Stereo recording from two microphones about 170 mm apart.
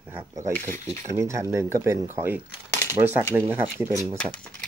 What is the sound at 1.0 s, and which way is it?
Speech, 15° right (ahead or behind).